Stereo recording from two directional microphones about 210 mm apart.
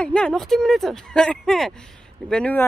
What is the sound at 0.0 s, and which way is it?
A woman's voice, 5° left (ahead or behind).